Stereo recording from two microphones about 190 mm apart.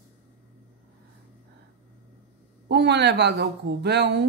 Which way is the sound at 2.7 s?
65° right (ahead or behind).